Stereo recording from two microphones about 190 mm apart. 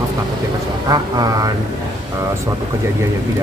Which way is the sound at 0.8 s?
20° right (ahead or behind).